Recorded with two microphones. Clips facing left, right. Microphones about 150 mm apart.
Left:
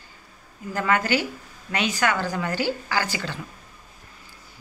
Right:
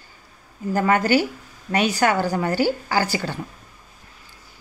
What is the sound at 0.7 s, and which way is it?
A woman's voice, 35° right (ahead or behind).